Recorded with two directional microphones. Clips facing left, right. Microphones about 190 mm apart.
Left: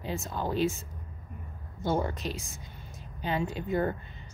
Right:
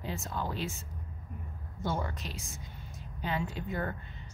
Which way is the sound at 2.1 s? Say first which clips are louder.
Left 7 dB; 20° left (ahead or behind).